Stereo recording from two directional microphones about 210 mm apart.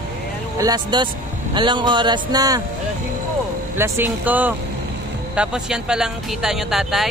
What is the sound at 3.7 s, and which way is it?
Speech, 10° right (ahead or behind).